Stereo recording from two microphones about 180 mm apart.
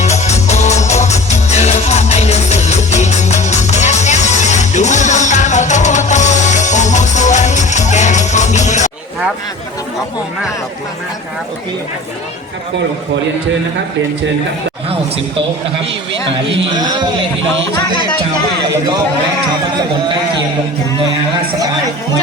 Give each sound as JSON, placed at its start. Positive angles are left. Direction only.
{"t": 0.0, "sound": "music", "side_deg": 40}
{"t": 16.3, "sound": "speech", "side_deg": -25}